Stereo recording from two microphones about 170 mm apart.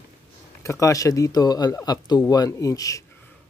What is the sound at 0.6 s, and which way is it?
Speech, 20° left (ahead or behind).